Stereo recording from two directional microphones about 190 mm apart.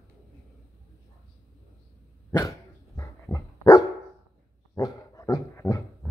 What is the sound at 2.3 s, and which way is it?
Dog, 15° left (ahead or behind).